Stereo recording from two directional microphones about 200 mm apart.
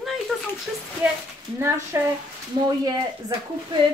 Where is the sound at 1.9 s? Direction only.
15° right (ahead or behind).